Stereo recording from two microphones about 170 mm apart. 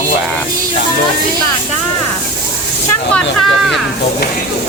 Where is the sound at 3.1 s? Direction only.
Centre (ahead or behind).